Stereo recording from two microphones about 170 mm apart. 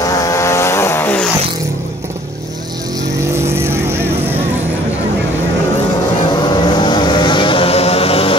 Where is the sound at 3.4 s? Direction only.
15° right (ahead or behind).